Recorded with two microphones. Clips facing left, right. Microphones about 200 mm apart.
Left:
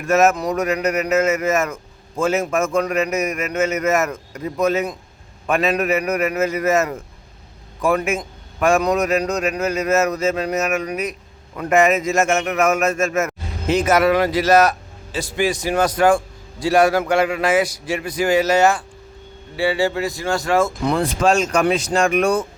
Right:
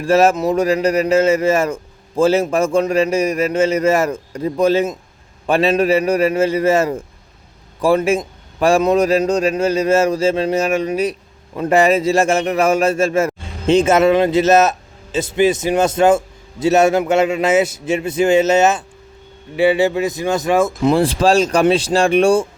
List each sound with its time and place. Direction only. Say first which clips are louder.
0.0 s a man's voice: right 3 dB; 30° right (ahead or behind)
20.8 s a man's voice: right 4 dB; 30° right (ahead or behind)